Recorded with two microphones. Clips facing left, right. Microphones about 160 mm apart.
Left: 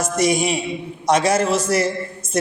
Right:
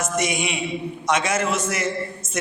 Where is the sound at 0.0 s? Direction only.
35° left (ahead or behind).